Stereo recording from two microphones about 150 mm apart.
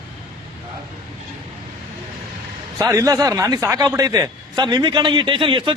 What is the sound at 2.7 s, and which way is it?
A man's voice, 20° right (ahead or behind).